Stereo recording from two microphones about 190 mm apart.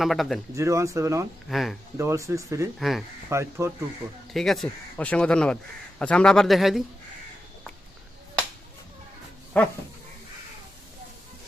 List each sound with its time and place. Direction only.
0.0 s speech: centre (ahead or behind)
0.5 s speech: 15° right (ahead or behind)
1.5 s speech: centre (ahead or behind)
2.0 s speech: 15° right (ahead or behind)
2.7 s speech: centre (ahead or behind)
3.2 s speech: 15° right (ahead or behind)
4.3 s speech: centre (ahead or behind)
9.5 s dog: 10° left (ahead or behind)